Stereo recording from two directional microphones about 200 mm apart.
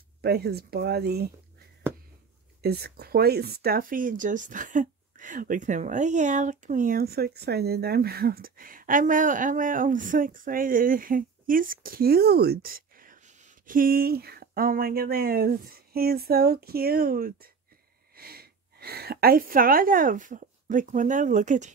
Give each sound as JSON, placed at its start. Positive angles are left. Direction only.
{"t": 0.2, "sound": "speech", "side_deg": -55}
{"t": 2.6, "sound": "speech", "side_deg": -50}